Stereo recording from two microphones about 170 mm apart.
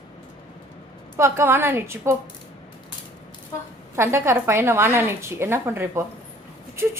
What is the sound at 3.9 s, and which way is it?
A woman's voice, 15° right (ahead or behind).